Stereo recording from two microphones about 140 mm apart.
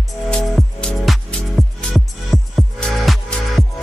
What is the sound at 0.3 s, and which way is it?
Music, 5° left (ahead or behind).